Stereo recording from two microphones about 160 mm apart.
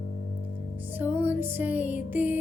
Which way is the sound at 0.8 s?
10° right (ahead or behind).